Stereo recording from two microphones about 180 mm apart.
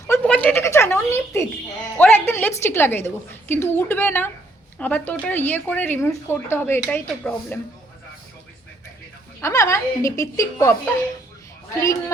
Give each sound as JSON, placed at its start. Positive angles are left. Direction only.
{"t": 0.1, "sound": "a sound", "side_deg": 10}
{"t": 2.0, "sound": "speech", "side_deg": 10}
{"t": 9.4, "sound": "speech", "side_deg": 15}